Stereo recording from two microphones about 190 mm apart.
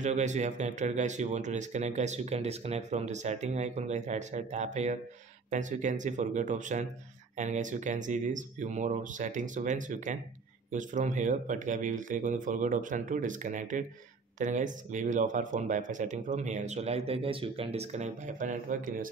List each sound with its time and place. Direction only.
0.0 s speech: 40° right (ahead or behind)